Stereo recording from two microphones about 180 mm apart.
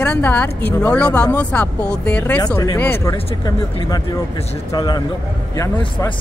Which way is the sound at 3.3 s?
30° left (ahead or behind).